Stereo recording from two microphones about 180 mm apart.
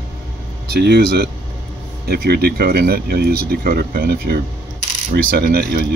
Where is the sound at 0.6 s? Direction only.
65° right (ahead or behind).